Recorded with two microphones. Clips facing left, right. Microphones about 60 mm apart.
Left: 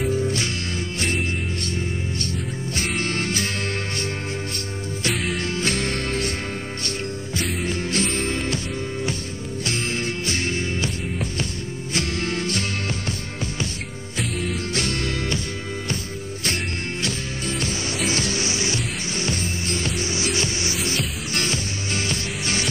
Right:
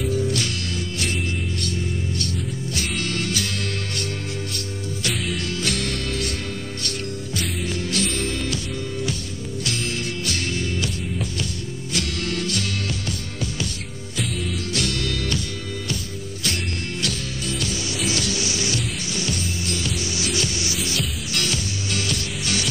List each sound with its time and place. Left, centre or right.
0.0 s music: left
3.0 s music: left
5.1 s music: centre
5.4 s music: left
7.3 s music: left
9.7 s music: left
11.9 s music: left
14.7 s music: left
17.0 s music: left